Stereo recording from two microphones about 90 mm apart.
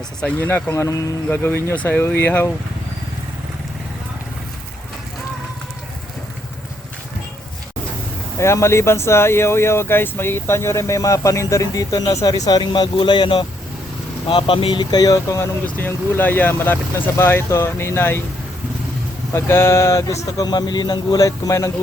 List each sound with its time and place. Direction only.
0.3 s speech: 20° left (ahead or behind)
0.7 s speech: 35° left (ahead or behind)
1.3 s speech: 25° left (ahead or behind)
8.4 s speech: 30° left (ahead or behind); by 13.4 s 65° left (ahead or behind)
14.3 s speech: 80° left
14.8 s speech: 50° left (ahead or behind)
15.6 s speech: 20° left (ahead or behind)
19.3 s speech: 25° left (ahead or behind)